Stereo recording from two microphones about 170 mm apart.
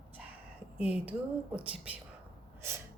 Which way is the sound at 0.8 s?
10° right (ahead or behind).